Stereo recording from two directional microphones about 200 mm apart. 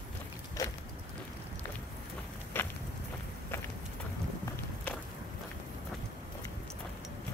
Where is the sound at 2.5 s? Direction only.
10° left (ahead or behind).